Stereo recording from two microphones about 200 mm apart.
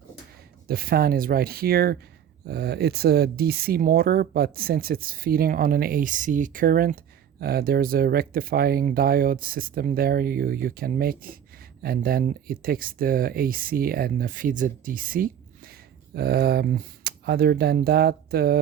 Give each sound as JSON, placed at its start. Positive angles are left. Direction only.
{"t": 0.7, "sound": "speech", "side_deg": -50}